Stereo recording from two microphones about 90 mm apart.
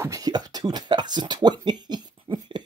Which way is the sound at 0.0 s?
45° right (ahead or behind).